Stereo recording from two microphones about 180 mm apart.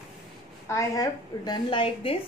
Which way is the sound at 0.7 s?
20° left (ahead or behind).